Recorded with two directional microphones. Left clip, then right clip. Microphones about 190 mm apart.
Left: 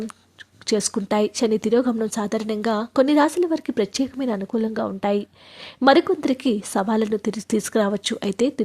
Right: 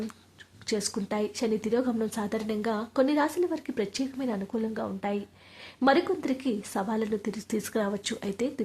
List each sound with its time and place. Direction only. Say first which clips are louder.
0.7 s a woman's voice: left 9 dB; 35° left (ahead or behind)